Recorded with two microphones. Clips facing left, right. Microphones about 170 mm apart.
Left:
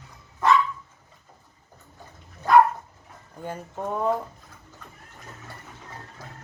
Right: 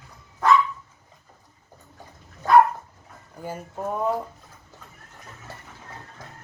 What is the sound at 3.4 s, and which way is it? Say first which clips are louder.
Speech: right 1 dB; 5° right (ahead or behind).